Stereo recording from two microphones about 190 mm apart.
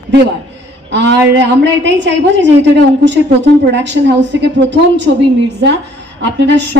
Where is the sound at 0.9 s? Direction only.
65° right (ahead or behind).